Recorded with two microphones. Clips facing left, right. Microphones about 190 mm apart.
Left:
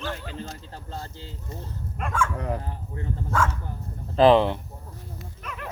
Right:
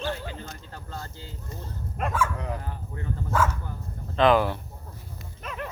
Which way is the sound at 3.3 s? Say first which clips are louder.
Even; 5° right (ahead or behind).